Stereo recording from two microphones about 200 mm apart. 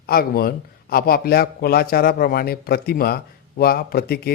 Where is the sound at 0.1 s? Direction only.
50° left (ahead or behind).